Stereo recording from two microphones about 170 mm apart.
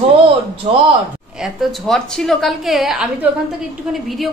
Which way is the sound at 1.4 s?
Centre (ahead or behind).